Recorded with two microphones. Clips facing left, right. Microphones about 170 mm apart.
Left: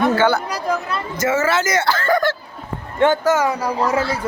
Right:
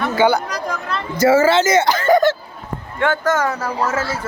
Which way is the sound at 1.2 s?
30° right (ahead or behind).